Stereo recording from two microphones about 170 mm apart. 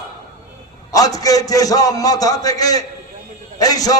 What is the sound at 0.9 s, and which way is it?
A man's voice, 20° left (ahead or behind).